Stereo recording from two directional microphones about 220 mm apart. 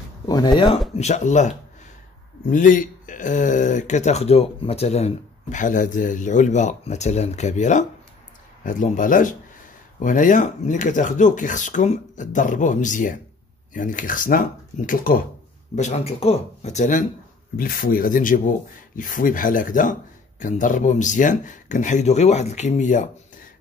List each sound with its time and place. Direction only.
0.3 s speech: 20° left (ahead or behind)
0.9 s speech: 30° left (ahead or behind)
15.7 s speech: 30° left (ahead or behind)